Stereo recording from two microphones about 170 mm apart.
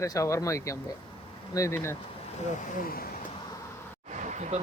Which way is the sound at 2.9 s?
60° left (ahead or behind).